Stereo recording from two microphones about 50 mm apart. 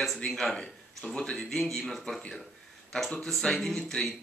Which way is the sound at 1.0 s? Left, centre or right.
Centre.